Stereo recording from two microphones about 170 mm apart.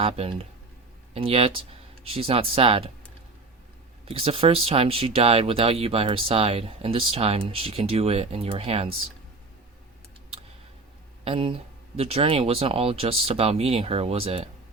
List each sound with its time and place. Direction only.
0.0 s speech: 35° right (ahead or behind)
4.0 s speech: 35° right (ahead or behind)
11.3 s speech: 30° right (ahead or behind)